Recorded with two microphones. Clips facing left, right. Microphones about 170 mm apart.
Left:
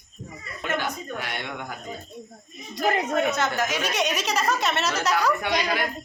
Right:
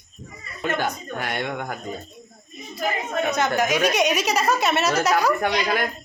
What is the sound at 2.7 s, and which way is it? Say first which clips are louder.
Speech: left 3 dB; 75° left (ahead or behind).